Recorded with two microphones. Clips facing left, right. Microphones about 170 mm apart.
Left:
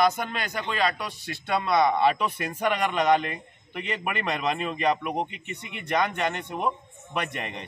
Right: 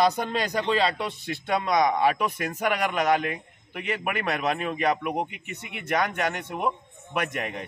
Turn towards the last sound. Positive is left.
turn(degrees=-5)  # may be behind; listen again after turning